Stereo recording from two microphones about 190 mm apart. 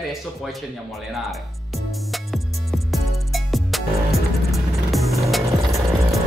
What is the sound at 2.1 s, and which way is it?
Music, centre (ahead or behind).